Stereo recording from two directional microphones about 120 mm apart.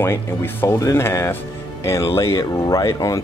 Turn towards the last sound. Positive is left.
turn(degrees=30)  # may be behind; listen again after turning